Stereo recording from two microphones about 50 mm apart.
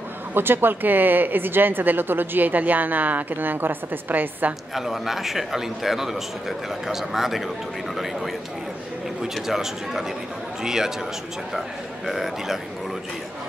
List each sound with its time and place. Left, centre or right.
0.3 s speech: right
4.7 s speech: centre
12.1 s speech: centre